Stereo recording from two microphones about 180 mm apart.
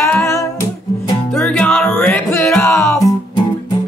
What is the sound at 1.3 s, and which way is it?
Music, 5° left (ahead or behind).